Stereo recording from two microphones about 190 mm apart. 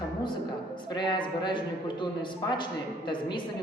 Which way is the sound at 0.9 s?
25° left (ahead or behind).